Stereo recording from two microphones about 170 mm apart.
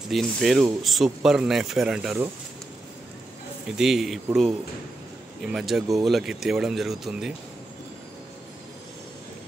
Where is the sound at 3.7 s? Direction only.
5° right (ahead or behind).